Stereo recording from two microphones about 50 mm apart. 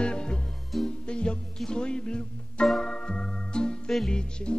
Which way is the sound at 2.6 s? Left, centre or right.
Centre.